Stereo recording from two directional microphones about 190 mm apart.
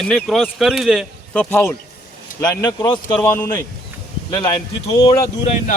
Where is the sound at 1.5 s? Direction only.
10° left (ahead or behind).